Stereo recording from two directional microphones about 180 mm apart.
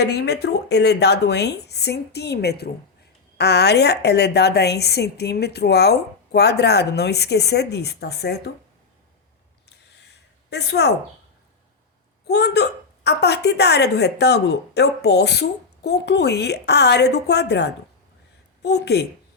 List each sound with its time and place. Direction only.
0.0 s a woman's voice: 65° left (ahead or behind)
9.6 s a sound: 65° left (ahead or behind)
12.3 s a woman's voice: 65° left (ahead or behind)